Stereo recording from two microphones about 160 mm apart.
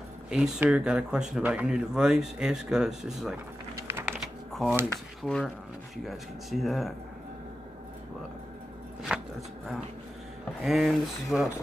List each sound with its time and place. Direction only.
0.3 s speech: 5° right (ahead or behind)
3.7 s typing: 15° right (ahead or behind)
4.5 s drawer open or close: centre (ahead or behind)
5.2 s speech: 5° left (ahead or behind)
10.6 s speech: centre (ahead or behind)